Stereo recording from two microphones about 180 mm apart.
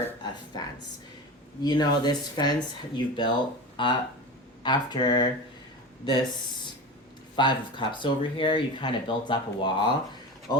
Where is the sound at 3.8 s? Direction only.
25° left (ahead or behind).